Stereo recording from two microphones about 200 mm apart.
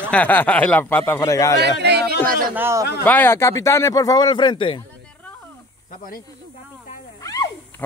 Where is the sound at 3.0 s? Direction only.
10° left (ahead or behind).